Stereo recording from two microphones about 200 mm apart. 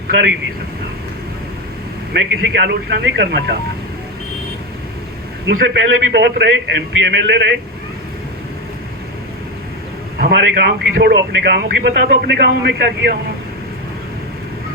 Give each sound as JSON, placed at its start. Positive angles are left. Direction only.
{"t": 2.1, "sound": "a man's voice", "side_deg": -55}
{"t": 5.5, "sound": "a man's voice", "side_deg": -60}
{"t": 10.2, "sound": "a man's voice", "side_deg": -55}